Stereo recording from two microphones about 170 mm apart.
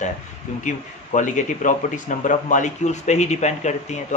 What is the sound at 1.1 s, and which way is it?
Speech, 50° left (ahead or behind).